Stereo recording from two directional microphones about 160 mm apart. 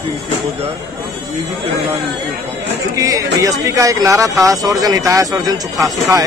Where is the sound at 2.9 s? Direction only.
20° right (ahead or behind).